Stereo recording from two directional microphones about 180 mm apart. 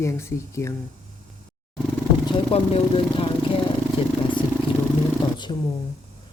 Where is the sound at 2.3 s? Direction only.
30° left (ahead or behind).